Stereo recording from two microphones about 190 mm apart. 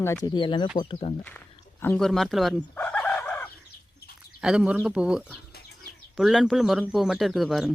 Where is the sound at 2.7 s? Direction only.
10° left (ahead or behind).